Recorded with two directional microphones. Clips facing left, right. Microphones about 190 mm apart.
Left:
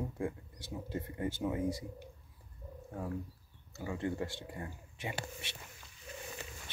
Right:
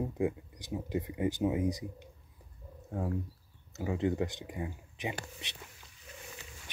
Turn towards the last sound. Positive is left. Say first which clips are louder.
# right 1 dB
turn(degrees=-20)  # may be behind; listen again after turning